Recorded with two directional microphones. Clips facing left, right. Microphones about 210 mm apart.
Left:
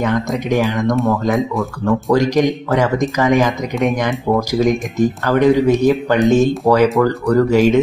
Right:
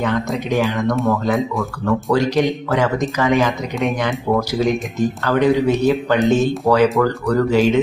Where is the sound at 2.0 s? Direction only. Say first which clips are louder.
Left 3 dB; 15° left (ahead or behind).